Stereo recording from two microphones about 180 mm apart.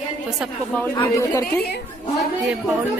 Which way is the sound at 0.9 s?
20° left (ahead or behind).